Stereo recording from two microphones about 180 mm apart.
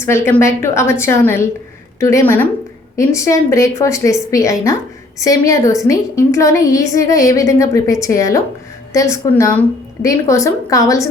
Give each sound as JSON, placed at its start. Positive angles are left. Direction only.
{"t": 0.0, "sound": "a woman's voice", "side_deg": 15}